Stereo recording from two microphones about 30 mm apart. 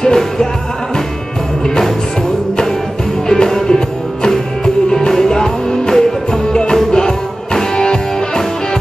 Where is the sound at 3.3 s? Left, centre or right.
Centre.